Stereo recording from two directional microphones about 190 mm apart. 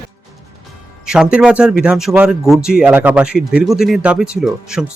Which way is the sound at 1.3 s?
5° right (ahead or behind).